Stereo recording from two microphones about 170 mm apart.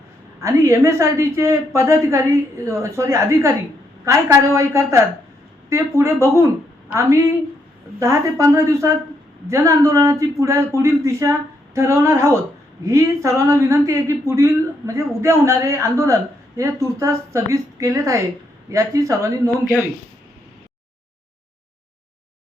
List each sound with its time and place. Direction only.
0.3 s a woman's voice: 15° right (ahead or behind)